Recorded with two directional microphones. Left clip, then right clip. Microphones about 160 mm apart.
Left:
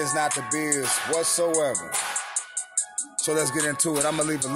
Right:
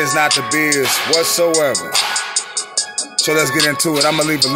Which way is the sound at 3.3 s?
25° left (ahead or behind).